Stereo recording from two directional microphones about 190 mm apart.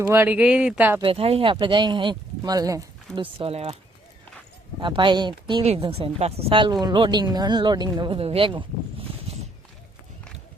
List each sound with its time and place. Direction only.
0.0 s speech: 10° right (ahead or behind)
1.0 s speech: 30° right (ahead or behind)
3.2 s speech: 30° right (ahead or behind)
4.8 s speech: 25° right (ahead or behind)